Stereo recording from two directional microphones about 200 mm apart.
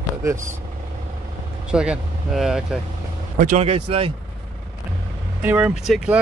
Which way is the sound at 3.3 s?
35° right (ahead or behind).